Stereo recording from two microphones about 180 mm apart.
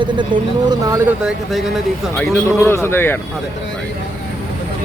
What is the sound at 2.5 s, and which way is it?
Speech, 15° left (ahead or behind).